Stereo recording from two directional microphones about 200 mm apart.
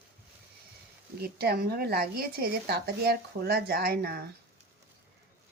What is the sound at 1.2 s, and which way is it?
A woman's voice, 50° right (ahead or behind).